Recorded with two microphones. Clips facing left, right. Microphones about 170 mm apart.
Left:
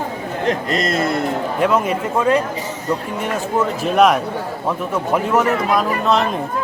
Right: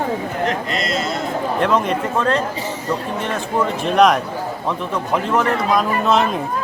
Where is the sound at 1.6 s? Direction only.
5° left (ahead or behind).